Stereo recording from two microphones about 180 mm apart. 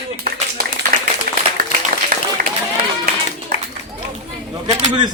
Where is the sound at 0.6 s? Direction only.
60° right (ahead or behind).